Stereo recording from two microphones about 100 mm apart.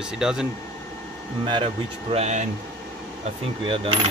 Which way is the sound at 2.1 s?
70° right (ahead or behind).